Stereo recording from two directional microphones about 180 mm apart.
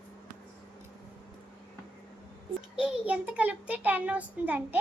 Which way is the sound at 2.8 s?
5° right (ahead or behind).